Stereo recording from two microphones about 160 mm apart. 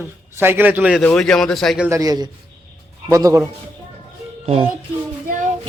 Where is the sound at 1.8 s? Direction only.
20° right (ahead or behind).